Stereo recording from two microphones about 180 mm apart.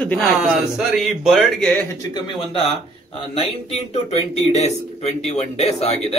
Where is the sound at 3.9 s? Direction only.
35° left (ahead or behind).